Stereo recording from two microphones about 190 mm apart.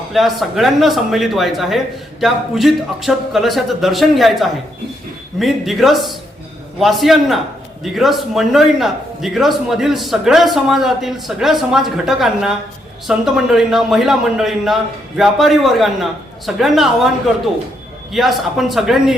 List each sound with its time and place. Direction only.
0.1 s a man's voice: centre (ahead or behind)